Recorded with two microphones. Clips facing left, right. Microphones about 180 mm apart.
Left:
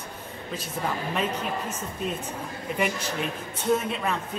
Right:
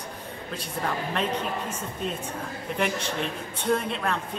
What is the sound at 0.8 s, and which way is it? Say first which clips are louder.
Speech: even; 5° left (ahead or behind).